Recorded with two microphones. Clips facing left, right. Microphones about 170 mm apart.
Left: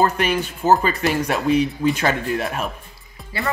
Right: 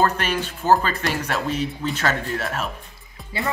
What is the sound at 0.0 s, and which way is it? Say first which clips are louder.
Speech: left 2 dB; 10° left (ahead or behind).